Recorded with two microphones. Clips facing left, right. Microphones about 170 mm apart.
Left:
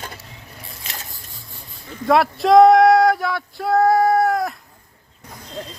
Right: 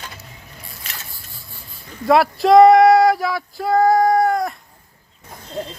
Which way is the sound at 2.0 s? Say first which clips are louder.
Right 2 dB; centre (ahead or behind).